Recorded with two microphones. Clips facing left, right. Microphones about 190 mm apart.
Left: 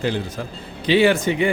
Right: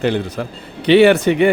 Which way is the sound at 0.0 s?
65° right (ahead or behind).